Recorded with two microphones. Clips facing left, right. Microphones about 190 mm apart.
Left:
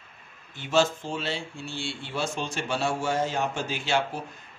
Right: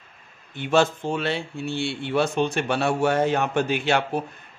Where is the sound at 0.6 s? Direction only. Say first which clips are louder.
Right 4 dB; 60° right (ahead or behind).